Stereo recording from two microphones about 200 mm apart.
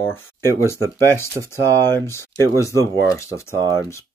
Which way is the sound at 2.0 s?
15° left (ahead or behind).